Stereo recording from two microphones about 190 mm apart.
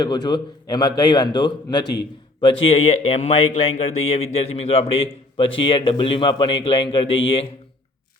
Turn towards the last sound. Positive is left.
turn(degrees=30)  # may be behind; listen again after turning